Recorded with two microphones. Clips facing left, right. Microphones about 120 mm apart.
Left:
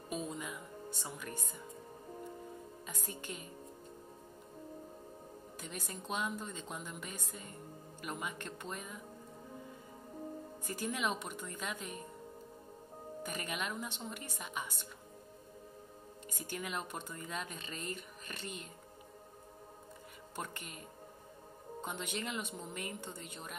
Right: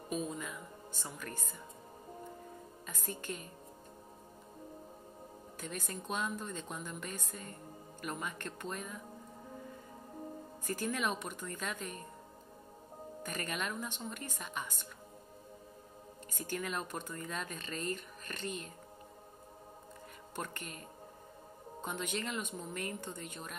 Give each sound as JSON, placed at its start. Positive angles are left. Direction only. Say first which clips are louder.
{"t": 0.3, "sound": "music", "louder": "even", "side_deg": 15}
{"t": 2.9, "sound": "speech", "louder": "right 3 dB", "side_deg": 15}
{"t": 5.6, "sound": "speech", "louder": "right 3 dB", "side_deg": 15}
{"t": 10.7, "sound": "speech", "louder": "right 2 dB", "side_deg": 15}
{"t": 13.2, "sound": "speech", "louder": "right 1 dB", "side_deg": 15}
{"t": 16.3, "sound": "speech", "louder": "right 3 dB", "side_deg": 15}
{"t": 20.3, "sound": "speech", "louder": "right 2 dB", "side_deg": 15}
{"t": 21.8, "sound": "speech", "louder": "right 2 dB", "side_deg": 15}